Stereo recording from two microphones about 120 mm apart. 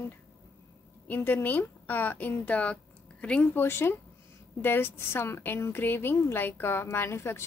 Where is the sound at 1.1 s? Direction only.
20° left (ahead or behind).